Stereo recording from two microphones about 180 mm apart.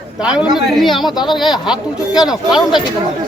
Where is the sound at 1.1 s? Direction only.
25° left (ahead or behind).